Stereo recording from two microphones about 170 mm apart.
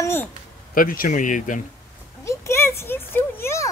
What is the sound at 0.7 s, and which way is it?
Speech, 55° left (ahead or behind).